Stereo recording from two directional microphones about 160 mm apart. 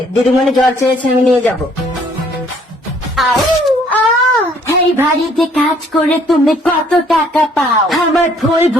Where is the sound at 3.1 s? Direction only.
Centre (ahead or behind).